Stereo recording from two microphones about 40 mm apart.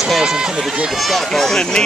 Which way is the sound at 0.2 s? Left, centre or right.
Centre.